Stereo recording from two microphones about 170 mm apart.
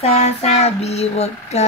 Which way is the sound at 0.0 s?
40° left (ahead or behind).